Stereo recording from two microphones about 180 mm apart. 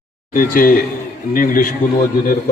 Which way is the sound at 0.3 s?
50° left (ahead or behind).